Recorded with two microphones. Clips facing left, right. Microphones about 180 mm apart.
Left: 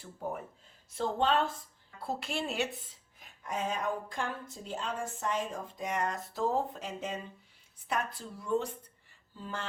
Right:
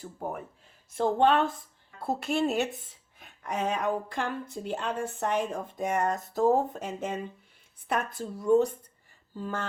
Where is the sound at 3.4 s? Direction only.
70° right (ahead or behind).